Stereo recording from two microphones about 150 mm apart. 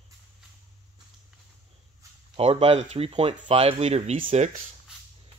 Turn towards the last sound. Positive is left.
turn(degrees=-45)  # may be behind; listen again after turning